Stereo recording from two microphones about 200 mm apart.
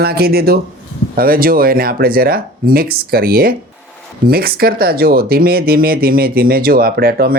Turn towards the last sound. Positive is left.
turn(degrees=-50)  # may be behind; listen again after turning